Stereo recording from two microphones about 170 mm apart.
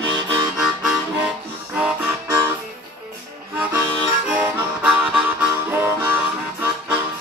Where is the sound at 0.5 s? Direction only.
5° right (ahead or behind).